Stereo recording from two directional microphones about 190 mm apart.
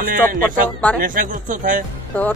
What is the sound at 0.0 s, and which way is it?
Speech, 50° right (ahead or behind).